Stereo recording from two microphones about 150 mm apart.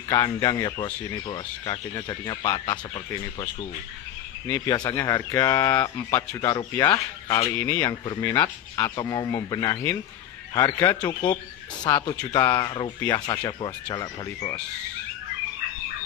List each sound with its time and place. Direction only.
0.1 s speech: 25° left (ahead or behind)
4.5 s speech: 20° left (ahead or behind)
6.9 s speech: 40° left (ahead or behind)
7.5 s speech: 15° left (ahead or behind)
8.9 s speech: 25° left (ahead or behind)